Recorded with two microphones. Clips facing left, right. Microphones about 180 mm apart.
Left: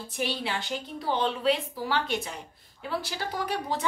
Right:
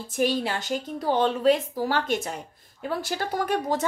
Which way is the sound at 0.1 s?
45° right (ahead or behind).